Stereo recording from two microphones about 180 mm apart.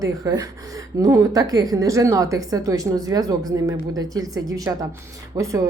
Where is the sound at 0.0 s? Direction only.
20° right (ahead or behind).